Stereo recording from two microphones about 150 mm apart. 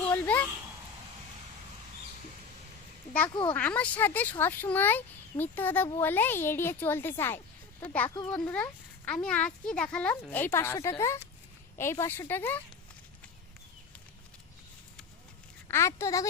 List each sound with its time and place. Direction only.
0.0 s a sound: 10° left (ahead or behind)
3.2 s speech: 30° left (ahead or behind)
3.5 s a child's voice: 10° left (ahead or behind)
15.7 s a woman's voice: 20° left (ahead or behind)